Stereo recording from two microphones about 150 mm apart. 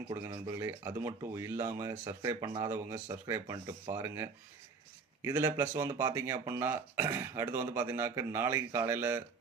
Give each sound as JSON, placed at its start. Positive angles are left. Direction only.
{"t": 0.1, "sound": "speech", "side_deg": -15}